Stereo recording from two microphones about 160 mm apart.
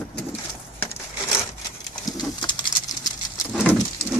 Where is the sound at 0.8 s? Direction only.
15° left (ahead or behind).